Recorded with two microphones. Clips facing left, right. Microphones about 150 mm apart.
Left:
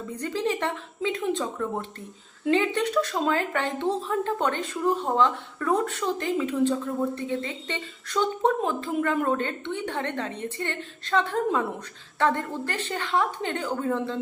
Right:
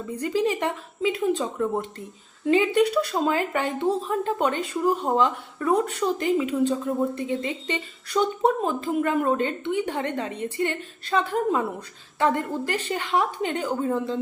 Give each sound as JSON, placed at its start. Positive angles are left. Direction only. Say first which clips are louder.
{"t": 0.2, "sound": "speech", "louder": "right 3 dB", "side_deg": -10}